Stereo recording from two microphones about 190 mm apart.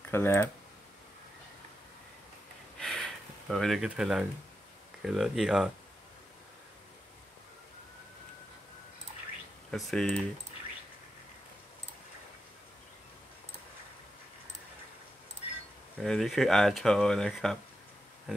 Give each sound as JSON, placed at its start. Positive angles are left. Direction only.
{"t": 0.0, "sound": "speech", "side_deg": 10}
{"t": 2.8, "sound": "gasp", "side_deg": 5}
{"t": 5.0, "sound": "speech", "side_deg": 0}
{"t": 9.7, "sound": "speech", "side_deg": 0}
{"t": 16.0, "sound": "speech", "side_deg": 0}